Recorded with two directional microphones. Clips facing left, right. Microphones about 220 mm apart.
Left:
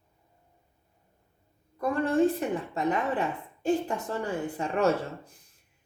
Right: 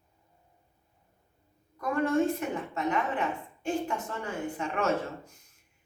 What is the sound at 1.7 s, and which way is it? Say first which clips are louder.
A woman's voice: left 1 dB; 30° left (ahead or behind).